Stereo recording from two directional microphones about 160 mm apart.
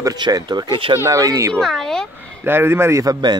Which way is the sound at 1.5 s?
Centre (ahead or behind).